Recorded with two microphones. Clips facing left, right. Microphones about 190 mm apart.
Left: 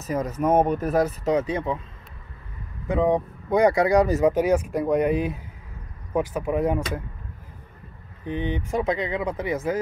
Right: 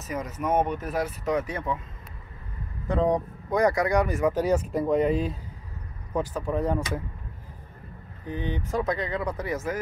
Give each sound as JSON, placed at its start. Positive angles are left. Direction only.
{"t": 0.0, "sound": "speech", "side_deg": 35}
{"t": 1.2, "sound": "speech", "side_deg": 25}
{"t": 2.9, "sound": "speech", "side_deg": 15}
{"t": 3.4, "sound": "speech", "side_deg": 30}
{"t": 4.2, "sound": "speech", "side_deg": 15}
{"t": 8.3, "sound": "speech", "side_deg": 20}